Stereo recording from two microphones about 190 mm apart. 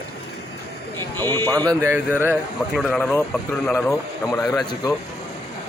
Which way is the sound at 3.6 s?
15° left (ahead or behind).